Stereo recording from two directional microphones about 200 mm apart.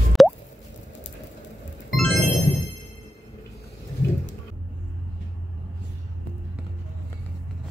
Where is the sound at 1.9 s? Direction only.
Centre (ahead or behind).